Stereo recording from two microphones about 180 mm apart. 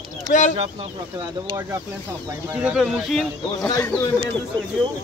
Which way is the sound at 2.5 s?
5° right (ahead or behind).